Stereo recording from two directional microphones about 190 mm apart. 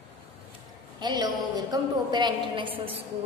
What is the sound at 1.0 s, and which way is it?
A woman's voice, 20° right (ahead or behind).